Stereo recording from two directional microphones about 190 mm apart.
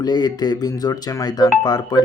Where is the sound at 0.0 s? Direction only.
20° left (ahead or behind).